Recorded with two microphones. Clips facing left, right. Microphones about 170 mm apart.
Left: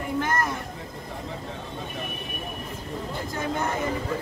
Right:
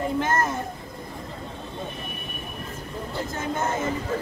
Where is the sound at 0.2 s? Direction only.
25° right (ahead or behind).